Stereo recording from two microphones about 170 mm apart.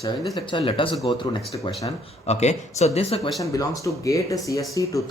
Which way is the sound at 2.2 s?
40° left (ahead or behind).